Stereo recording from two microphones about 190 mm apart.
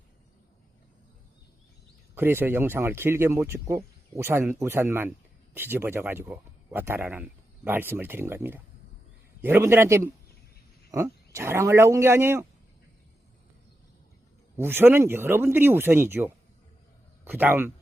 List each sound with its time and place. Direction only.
2.1 s speech: 10° right (ahead or behind)
14.5 s speech: 10° right (ahead or behind)